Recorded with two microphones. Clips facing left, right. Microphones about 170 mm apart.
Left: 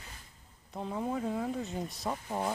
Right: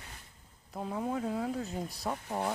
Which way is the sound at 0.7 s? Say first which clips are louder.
Even; centre (ahead or behind).